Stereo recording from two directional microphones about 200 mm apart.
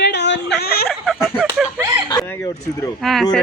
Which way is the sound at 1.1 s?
Centre (ahead or behind).